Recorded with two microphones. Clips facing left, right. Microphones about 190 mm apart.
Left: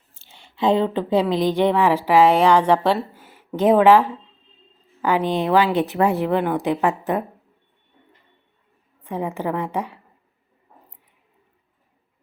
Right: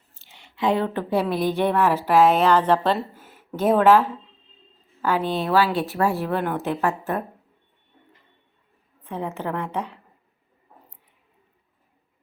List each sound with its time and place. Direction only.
0.1 s a woman's voice: 30° left (ahead or behind)
9.0 s a woman's voice: 15° left (ahead or behind)